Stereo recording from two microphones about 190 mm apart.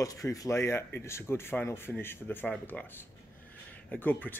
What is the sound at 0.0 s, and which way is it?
Speech, 15° left (ahead or behind).